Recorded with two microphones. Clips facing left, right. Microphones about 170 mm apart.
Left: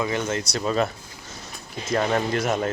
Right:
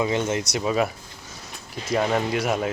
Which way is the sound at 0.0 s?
20° right (ahead or behind).